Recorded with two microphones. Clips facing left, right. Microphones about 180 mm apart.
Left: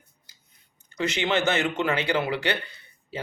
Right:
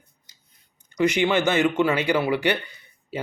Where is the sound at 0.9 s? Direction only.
15° right (ahead or behind).